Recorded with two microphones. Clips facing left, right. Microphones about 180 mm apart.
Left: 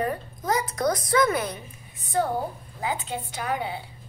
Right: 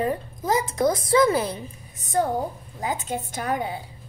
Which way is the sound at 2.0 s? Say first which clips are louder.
Right 2 dB; 45° right (ahead or behind).